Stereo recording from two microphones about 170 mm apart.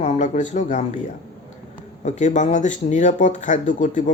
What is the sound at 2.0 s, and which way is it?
Speech, 45° left (ahead or behind).